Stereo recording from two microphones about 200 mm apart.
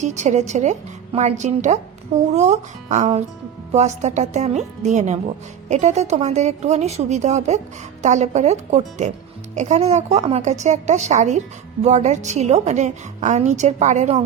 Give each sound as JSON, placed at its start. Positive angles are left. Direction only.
{"t": 0.0, "sound": "a woman's voice", "side_deg": -35}